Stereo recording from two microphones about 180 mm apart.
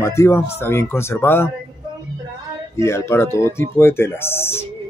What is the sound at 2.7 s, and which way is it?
Speech, 15° left (ahead or behind).